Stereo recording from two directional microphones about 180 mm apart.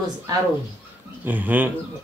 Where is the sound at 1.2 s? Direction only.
10° right (ahead or behind).